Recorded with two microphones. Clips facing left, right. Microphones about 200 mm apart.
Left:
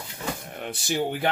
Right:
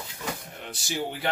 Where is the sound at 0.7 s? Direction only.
55° left (ahead or behind).